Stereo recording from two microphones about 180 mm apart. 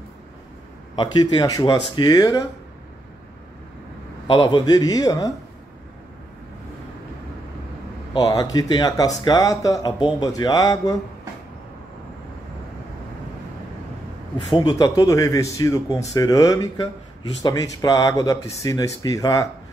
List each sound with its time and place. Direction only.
0.9 s speech: 25° left (ahead or behind)
4.3 s speech: 25° left (ahead or behind)
8.1 s speech: 20° left (ahead or behind)
14.6 s speech: 20° left (ahead or behind)